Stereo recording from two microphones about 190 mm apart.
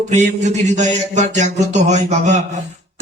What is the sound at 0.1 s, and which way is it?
A man's voice, 40° right (ahead or behind).